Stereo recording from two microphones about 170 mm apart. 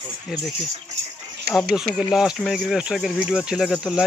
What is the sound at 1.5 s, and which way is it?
Speech, centre (ahead or behind).